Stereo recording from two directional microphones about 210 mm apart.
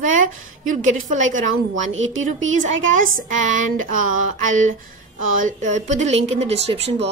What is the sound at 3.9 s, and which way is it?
Speech, 40° right (ahead or behind).